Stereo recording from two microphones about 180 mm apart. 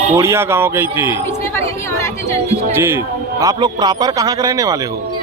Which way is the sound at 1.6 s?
15° left (ahead or behind).